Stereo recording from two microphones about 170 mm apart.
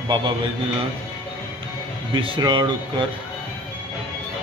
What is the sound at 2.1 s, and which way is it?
Speech, 30° right (ahead or behind).